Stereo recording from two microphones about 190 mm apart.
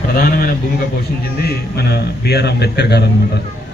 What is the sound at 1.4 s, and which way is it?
A man's voice, 55° left (ahead or behind).